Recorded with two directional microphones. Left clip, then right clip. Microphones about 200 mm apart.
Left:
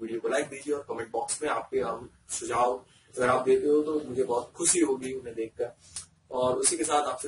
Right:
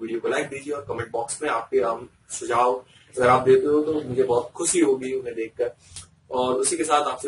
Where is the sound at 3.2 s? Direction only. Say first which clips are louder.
Right 7 dB; 5° left (ahead or behind).